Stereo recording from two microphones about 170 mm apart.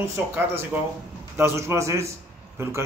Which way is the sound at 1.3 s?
15° right (ahead or behind).